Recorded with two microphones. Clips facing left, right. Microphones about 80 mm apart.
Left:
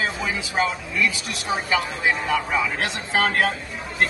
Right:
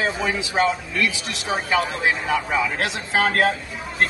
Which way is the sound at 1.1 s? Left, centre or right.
Right.